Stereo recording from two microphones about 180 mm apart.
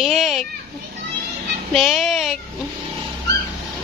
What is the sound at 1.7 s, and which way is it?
Speech, centre (ahead or behind).